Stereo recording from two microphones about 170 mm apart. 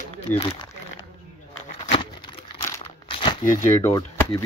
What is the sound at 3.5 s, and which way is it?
Speech, 15° left (ahead or behind).